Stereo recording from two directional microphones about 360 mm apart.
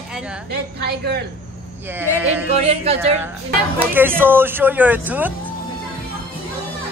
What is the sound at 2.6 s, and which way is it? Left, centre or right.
Yodeling, centre.